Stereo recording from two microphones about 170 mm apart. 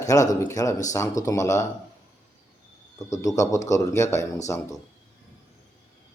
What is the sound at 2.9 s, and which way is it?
Speech, 20° left (ahead or behind).